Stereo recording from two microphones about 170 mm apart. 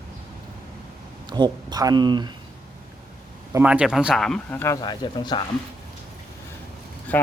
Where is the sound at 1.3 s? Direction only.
25° right (ahead or behind).